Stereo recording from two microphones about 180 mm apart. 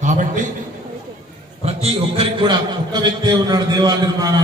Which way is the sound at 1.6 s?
35° right (ahead or behind).